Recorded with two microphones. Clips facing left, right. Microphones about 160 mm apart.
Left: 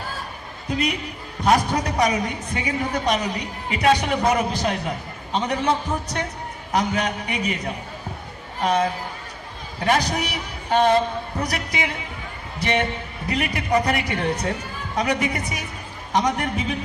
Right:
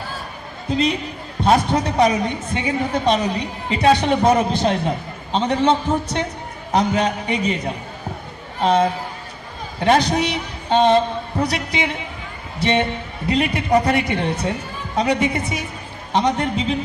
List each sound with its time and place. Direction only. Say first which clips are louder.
0.7 s a man's voice: right 5 dB; 30° right (ahead or behind)
13.3 s a woman's voice: right 4 dB; 25° right (ahead or behind)